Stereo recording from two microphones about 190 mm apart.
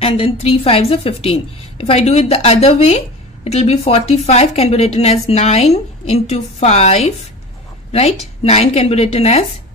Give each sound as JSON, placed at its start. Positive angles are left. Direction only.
{"t": 0.0, "sound": "a woman's voice", "side_deg": 30}